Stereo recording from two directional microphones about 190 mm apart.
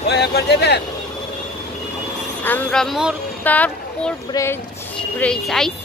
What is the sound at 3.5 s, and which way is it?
Speech, 10° left (ahead or behind).